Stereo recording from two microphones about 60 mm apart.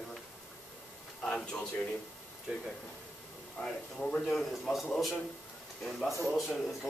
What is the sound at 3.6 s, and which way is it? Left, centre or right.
Speech, centre.